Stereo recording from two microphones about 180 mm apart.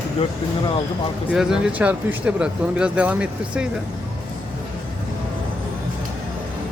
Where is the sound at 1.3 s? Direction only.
5° right (ahead or behind).